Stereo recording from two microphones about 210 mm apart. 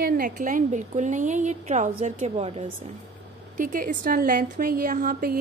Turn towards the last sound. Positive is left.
turn(degrees=-40)  # may be behind; listen again after turning